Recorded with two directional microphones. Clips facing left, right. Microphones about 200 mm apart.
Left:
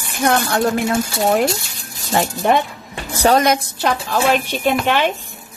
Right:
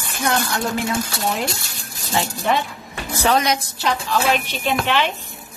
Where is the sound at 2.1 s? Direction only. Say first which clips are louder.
Left 5 dB; 55° left (ahead or behind).